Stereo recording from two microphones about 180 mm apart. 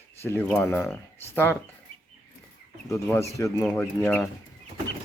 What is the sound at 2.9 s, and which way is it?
Speech, 15° left (ahead or behind).